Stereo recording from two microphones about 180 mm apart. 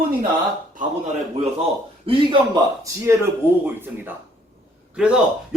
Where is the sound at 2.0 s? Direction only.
30° right (ahead or behind).